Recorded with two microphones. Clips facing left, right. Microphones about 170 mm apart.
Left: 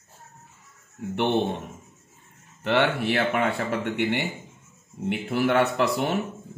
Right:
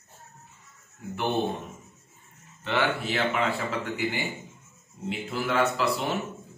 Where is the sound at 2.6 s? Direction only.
65° left (ahead or behind).